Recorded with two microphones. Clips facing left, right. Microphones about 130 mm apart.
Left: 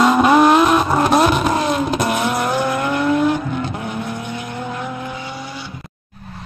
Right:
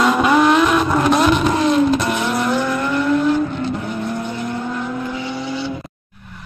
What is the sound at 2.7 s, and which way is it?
Vehicle, 60° left (ahead or behind).